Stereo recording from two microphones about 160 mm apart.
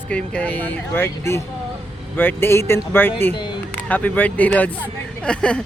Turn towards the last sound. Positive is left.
turn(degrees=5)  # may be behind; listen again after turning